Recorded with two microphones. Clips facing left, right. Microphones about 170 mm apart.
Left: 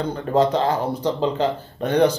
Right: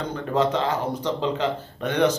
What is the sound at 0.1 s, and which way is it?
Speech, 35° left (ahead or behind).